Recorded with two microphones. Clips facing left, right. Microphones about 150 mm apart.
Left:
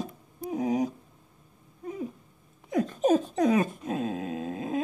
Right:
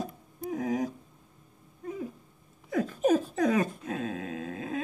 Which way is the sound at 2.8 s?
25° left (ahead or behind).